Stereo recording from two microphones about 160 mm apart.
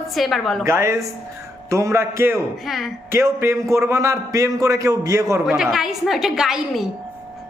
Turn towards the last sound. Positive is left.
turn(degrees=-5)  # may be behind; listen again after turning